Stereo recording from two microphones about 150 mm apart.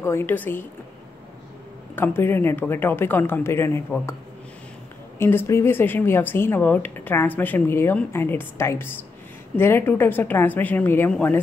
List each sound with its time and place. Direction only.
0.0 s speech: 15° left (ahead or behind)
2.0 s speech: 15° left (ahead or behind)
5.2 s speech: 15° left (ahead or behind)